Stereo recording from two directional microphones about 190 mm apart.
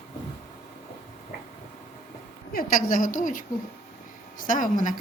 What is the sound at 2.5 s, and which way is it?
Speech, 45° left (ahead or behind).